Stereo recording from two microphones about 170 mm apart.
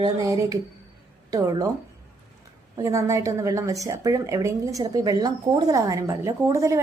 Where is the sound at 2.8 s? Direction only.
20° right (ahead or behind).